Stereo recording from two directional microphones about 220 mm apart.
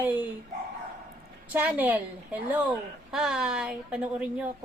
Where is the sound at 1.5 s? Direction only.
10° right (ahead or behind).